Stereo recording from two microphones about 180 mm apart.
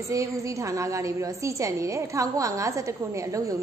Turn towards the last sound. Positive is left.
turn(degrees=-20)  # may be behind; listen again after turning